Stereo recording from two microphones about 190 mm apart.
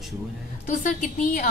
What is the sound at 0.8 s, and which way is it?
Speech, 45° left (ahead or behind).